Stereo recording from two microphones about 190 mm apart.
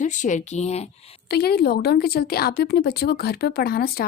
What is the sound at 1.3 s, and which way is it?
Speech, 55° left (ahead or behind).